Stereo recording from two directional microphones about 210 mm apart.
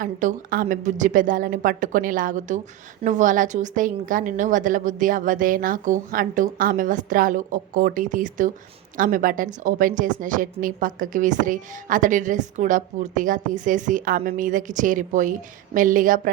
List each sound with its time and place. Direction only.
0.0 s a woman's voice: 40° right (ahead or behind)